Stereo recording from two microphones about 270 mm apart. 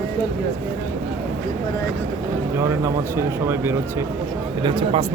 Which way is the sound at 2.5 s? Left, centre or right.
Centre.